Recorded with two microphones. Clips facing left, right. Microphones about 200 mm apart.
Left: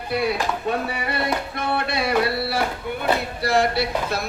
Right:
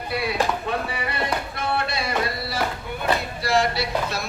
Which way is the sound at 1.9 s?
60° left (ahead or behind).